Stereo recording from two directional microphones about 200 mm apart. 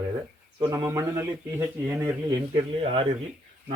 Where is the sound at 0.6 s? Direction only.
20° right (ahead or behind).